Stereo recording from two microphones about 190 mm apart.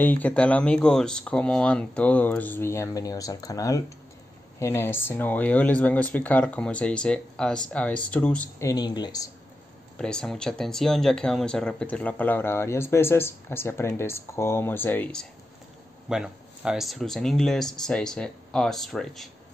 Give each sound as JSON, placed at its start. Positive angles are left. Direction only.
{"t": 0.0, "sound": "speech", "side_deg": 10}
{"t": 8.6, "sound": "speech", "side_deg": 20}
{"t": 9.9, "sound": "speech", "side_deg": 5}